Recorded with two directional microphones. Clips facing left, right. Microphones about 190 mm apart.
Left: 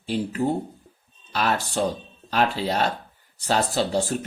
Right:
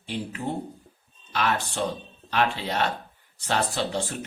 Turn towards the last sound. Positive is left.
turn(degrees=40)  # may be behind; listen again after turning